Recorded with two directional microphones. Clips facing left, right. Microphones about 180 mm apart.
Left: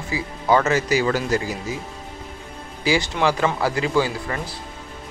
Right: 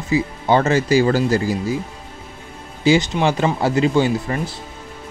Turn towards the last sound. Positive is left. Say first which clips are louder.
# right 4 dB
turn(degrees=-25)  # may be behind; listen again after turning